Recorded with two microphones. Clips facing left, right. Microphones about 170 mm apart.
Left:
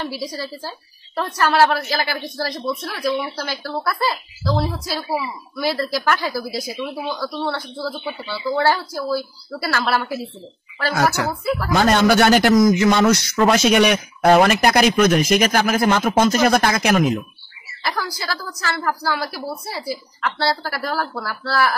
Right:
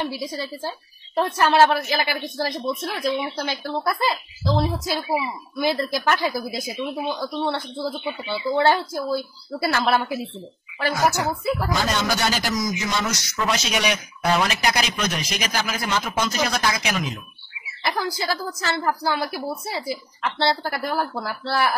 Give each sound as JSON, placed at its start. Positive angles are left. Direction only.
{"t": 0.0, "sound": "speech", "side_deg": -20}
{"t": 11.7, "sound": "a man's voice", "side_deg": 60}
{"t": 17.8, "sound": "speech", "side_deg": -20}